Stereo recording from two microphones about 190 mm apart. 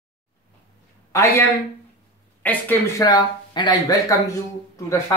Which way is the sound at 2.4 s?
10° left (ahead or behind).